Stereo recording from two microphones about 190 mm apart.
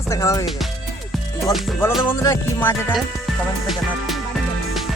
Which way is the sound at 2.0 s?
15° left (ahead or behind).